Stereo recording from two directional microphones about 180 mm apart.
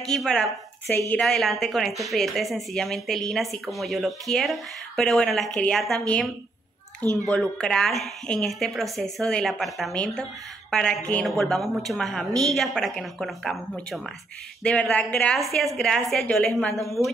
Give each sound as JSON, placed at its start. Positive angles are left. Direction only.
{"t": 0.0, "sound": "a woman's voice", "side_deg": 5}